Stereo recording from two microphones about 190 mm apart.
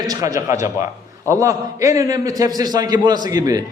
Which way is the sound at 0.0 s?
20° right (ahead or behind).